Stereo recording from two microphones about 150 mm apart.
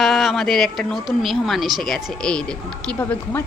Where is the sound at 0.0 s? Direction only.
Centre (ahead or behind).